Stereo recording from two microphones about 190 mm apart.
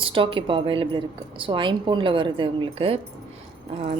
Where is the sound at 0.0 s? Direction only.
25° right (ahead or behind).